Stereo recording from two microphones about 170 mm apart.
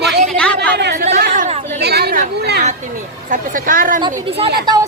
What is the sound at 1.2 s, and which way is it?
Chatter, 65° right (ahead or behind).